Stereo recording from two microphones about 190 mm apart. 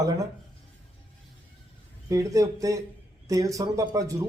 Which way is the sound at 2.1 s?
15° right (ahead or behind).